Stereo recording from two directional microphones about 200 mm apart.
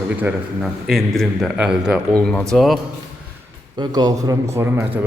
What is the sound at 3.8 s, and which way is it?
A man's voice, 20° right (ahead or behind).